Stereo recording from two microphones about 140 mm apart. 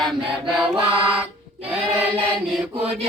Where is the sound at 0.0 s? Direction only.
Centre (ahead or behind).